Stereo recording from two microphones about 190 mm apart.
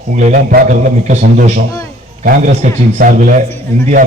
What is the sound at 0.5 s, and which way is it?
A man's voice, 45° right (ahead or behind).